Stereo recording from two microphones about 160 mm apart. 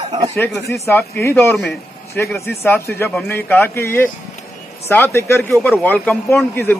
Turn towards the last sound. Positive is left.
turn(degrees=15)  # may be behind; listen again after turning